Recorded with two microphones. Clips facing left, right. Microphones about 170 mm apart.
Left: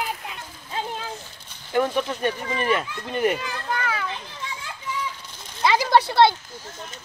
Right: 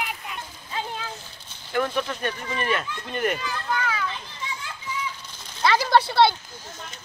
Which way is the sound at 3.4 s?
55° left (ahead or behind).